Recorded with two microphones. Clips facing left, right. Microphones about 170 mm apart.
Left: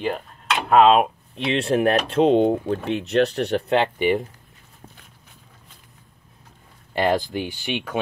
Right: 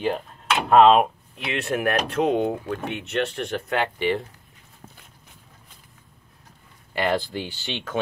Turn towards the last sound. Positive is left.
turn(degrees=15)  # may be behind; listen again after turning